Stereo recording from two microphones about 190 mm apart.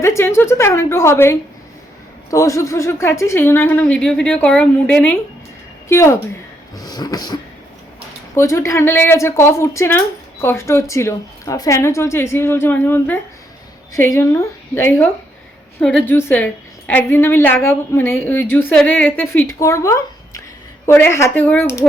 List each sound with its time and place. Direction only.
0.0 s a woman's voice: 15° left (ahead or behind)
6.7 s beatboxing: 20° left (ahead or behind)
8.4 s a woman's voice: 15° left (ahead or behind)